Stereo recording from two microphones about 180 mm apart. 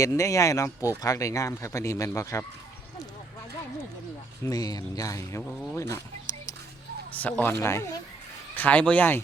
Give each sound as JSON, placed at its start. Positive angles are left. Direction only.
{"t": 0.0, "sound": "speech", "side_deg": 15}
{"t": 4.4, "sound": "speech", "side_deg": 20}
{"t": 6.3, "sound": "a sound", "side_deg": 20}
{"t": 7.2, "sound": "speech", "side_deg": 10}